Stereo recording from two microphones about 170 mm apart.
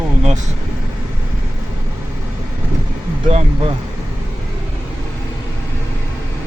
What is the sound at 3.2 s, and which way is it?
Speech, 30° right (ahead or behind).